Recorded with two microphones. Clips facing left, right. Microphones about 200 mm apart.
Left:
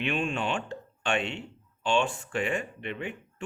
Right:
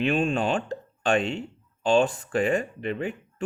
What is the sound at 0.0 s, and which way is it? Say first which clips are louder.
Speech: right 6 dB; 35° right (ahead or behind).